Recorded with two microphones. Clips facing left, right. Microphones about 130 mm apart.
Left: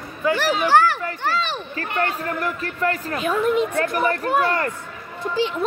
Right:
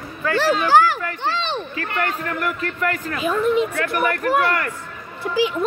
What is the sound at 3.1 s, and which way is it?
Speech, centre (ahead or behind).